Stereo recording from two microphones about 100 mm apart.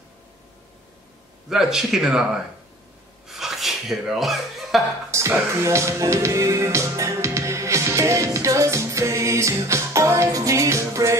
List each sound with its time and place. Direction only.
1.5 s speech: 5° right (ahead or behind)
3.3 s a sound: 5° right (ahead or behind)
5.1 s music: 30° right (ahead or behind)